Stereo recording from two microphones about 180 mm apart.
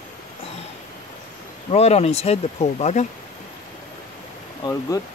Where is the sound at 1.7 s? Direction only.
35° left (ahead or behind).